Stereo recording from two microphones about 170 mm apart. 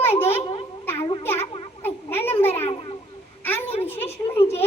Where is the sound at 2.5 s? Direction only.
35° left (ahead or behind).